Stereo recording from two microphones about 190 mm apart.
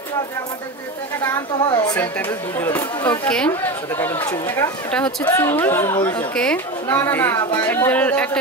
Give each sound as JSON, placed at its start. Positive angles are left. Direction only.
{"t": 1.7, "sound": "speech", "side_deg": 20}
{"t": 2.0, "sound": "speech", "side_deg": 10}